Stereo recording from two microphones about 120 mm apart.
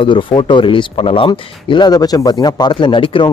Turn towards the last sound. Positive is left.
turn(degrees=45)  # may be behind; listen again after turning